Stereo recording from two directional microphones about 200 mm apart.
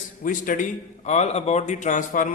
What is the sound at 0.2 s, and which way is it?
Speech, 40° left (ahead or behind).